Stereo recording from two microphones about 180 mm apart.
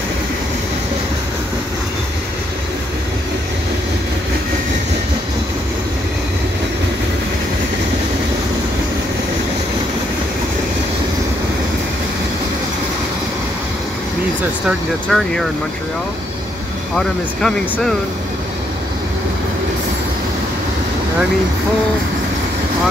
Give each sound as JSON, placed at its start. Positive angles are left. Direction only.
{"t": 15.0, "sound": "speech", "side_deg": 5}
{"t": 16.9, "sound": "speech", "side_deg": 5}